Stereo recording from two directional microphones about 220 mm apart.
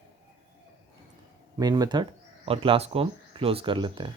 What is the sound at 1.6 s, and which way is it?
Speech, 20° right (ahead or behind).